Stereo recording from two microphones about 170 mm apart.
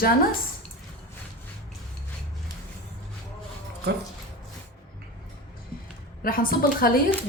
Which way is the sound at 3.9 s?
90° right.